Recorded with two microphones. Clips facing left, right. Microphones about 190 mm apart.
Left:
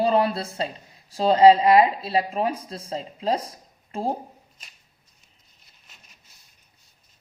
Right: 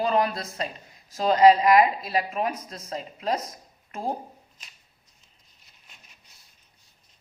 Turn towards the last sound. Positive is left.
turn(degrees=0)  # may be behind; listen again after turning